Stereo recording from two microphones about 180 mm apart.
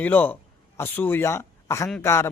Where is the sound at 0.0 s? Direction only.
10° left (ahead or behind).